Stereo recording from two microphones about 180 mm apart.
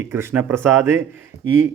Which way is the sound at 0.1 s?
15° right (ahead or behind).